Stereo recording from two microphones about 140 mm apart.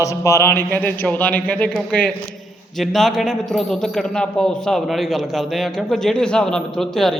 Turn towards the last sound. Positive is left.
turn(degrees=5)  # may be behind; listen again after turning